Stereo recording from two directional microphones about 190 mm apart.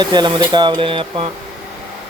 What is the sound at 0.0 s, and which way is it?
Speech, 20° right (ahead or behind).